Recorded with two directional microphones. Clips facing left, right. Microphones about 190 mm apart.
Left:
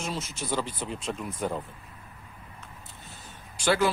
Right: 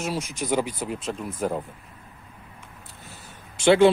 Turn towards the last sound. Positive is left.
turn(degrees=-25)  # may be behind; listen again after turning